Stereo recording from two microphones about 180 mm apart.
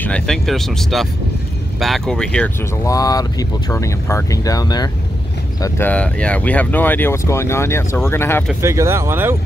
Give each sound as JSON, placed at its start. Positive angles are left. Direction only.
{"t": 0.0, "sound": "speech", "side_deg": 5}
{"t": 2.8, "sound": "speech", "side_deg": 20}
{"t": 5.6, "sound": "speech", "side_deg": 10}
{"t": 8.5, "sound": "speech", "side_deg": -15}